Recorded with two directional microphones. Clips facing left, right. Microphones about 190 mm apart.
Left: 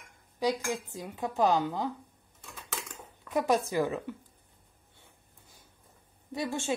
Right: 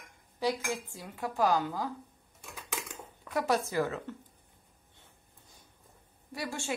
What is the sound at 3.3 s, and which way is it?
Speech, 20° left (ahead or behind).